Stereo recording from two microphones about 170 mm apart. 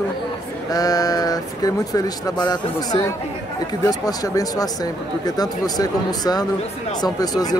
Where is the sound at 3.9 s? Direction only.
20° left (ahead or behind).